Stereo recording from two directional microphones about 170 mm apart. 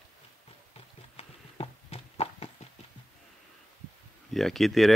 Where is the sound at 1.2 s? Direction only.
35° left (ahead or behind).